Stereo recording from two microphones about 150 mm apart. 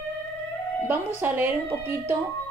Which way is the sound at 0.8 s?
15° right (ahead or behind).